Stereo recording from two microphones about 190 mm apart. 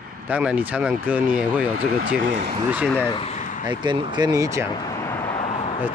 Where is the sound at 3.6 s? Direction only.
25° right (ahead or behind).